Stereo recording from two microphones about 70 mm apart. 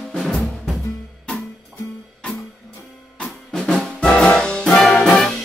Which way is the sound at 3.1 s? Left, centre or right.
Centre.